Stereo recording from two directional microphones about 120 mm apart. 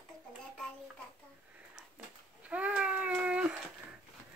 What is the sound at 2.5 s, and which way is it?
Baby cry, 10° right (ahead or behind).